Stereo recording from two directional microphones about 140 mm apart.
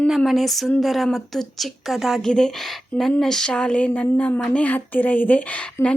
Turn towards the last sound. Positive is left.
turn(degrees=10)  # may be behind; listen again after turning